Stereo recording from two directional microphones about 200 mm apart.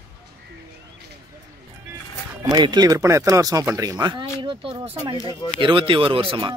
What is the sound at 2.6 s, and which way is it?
Speech, 20° right (ahead or behind).